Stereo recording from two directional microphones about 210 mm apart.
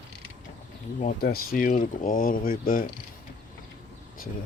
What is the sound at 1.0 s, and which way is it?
Speech, 40° left (ahead or behind).